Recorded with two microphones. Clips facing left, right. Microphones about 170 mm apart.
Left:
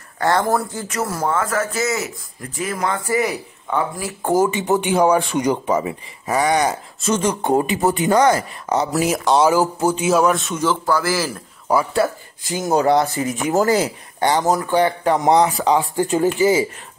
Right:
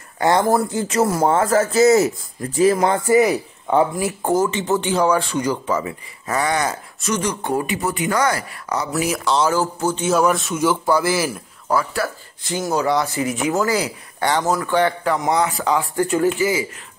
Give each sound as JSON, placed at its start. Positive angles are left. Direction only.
{"t": 0.2, "sound": "speech", "side_deg": -20}
{"t": 4.4, "sound": "speech", "side_deg": 15}
{"t": 9.4, "sound": "a man's voice", "side_deg": 15}
{"t": 10.6, "sound": "speech", "side_deg": -20}
{"t": 11.7, "sound": "speech", "side_deg": 10}
{"t": 12.7, "sound": "speech", "side_deg": 45}
{"t": 14.2, "sound": "speech", "side_deg": 15}